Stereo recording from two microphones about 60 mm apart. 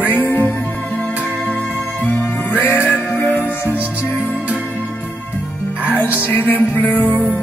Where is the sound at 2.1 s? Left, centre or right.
Left.